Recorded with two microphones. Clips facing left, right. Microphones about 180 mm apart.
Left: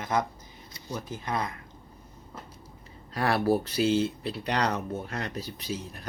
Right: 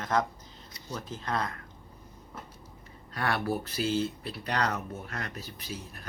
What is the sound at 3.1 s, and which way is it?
Speech, 35° left (ahead or behind).